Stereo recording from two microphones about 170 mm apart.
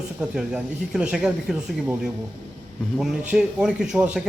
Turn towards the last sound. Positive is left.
turn(degrees=-5)  # may be behind; listen again after turning